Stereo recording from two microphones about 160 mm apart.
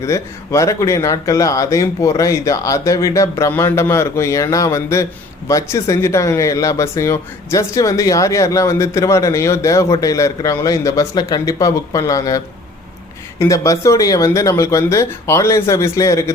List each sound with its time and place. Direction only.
0.0 s speech: 20° left (ahead or behind)
13.4 s speech: 20° left (ahead or behind)